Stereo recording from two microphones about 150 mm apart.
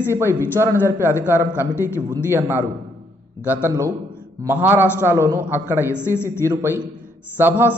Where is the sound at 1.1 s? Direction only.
20° left (ahead or behind).